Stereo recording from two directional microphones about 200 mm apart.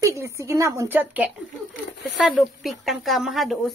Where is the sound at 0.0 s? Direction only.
15° right (ahead or behind).